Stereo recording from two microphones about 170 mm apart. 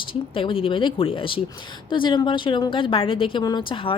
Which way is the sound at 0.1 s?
30° left (ahead or behind).